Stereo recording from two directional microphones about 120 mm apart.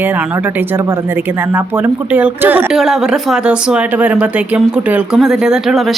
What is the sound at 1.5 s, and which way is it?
Speech, 15° right (ahead or behind).